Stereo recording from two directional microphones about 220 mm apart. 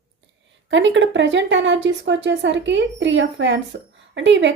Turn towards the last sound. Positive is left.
turn(degrees=-55)  # may be behind; listen again after turning